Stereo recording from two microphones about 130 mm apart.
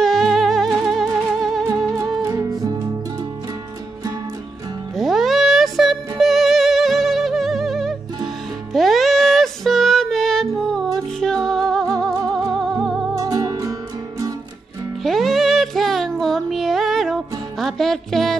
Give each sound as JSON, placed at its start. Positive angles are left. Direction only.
{"t": 0.0, "sound": "music", "side_deg": 0}
{"t": 2.2, "sound": "music", "side_deg": -25}
{"t": 4.9, "sound": "music", "side_deg": 0}
{"t": 13.2, "sound": "music", "side_deg": -25}
{"t": 15.0, "sound": "female singing", "side_deg": 0}